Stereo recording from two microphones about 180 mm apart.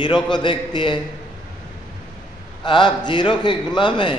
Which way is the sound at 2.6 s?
25° left (ahead or behind).